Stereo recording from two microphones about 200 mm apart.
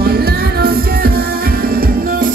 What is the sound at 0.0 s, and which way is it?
Music, 50° right (ahead or behind).